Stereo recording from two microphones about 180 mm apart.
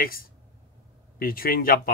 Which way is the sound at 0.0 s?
55° left (ahead or behind).